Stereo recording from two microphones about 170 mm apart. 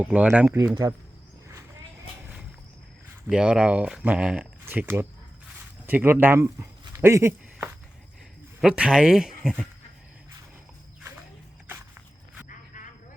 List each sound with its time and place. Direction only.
0.0 s speech: 10° right (ahead or behind)
0.7 s speech: 25° right (ahead or behind)
3.2 s speech: 5° right (ahead or behind)
8.6 s speech: 5° right (ahead or behind)
12.5 s a sound: 50° left (ahead or behind)